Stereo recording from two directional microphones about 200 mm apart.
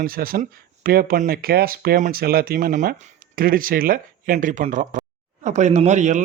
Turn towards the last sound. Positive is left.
turn(degrees=-35)  # may be behind; listen again after turning